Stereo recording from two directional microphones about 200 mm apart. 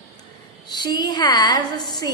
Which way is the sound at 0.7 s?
20° left (ahead or behind).